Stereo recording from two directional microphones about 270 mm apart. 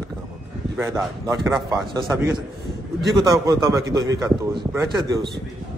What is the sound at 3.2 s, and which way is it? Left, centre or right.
Speech, centre.